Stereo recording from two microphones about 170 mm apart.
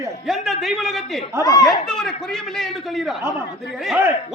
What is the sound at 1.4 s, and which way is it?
Speech, 20° left (ahead or behind).